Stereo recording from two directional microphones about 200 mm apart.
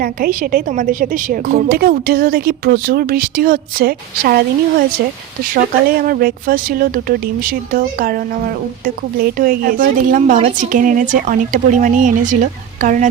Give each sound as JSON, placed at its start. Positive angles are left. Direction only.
{"t": 0.0, "sound": "a woman's voice", "side_deg": -45}
{"t": 6.0, "sound": "a woman's voice", "side_deg": -45}